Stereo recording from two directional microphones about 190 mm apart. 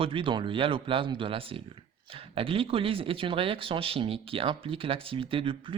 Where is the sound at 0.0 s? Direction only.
30° right (ahead or behind).